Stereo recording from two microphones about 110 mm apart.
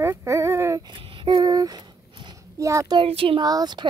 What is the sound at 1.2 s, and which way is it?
A child's voice, 40° right (ahead or behind).